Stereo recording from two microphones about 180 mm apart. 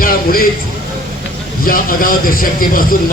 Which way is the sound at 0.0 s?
55° left (ahead or behind).